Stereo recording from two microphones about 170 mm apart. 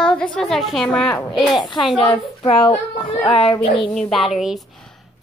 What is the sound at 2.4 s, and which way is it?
Speech, 30° left (ahead or behind).